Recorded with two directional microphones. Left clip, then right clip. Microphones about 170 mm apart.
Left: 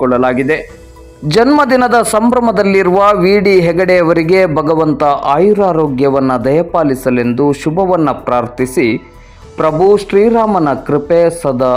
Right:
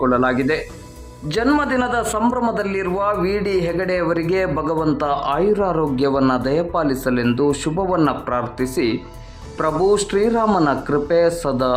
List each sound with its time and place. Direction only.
0.0 s speech: 15° left (ahead or behind)
1.6 s a man's voice: 40° left (ahead or behind); by 11.7 s 20° left (ahead or behind)